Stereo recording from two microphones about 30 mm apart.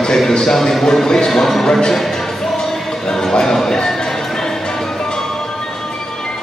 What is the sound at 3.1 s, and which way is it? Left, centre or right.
Speech, centre.